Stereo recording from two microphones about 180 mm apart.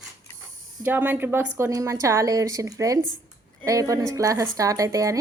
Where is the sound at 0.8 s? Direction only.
10° right (ahead or behind).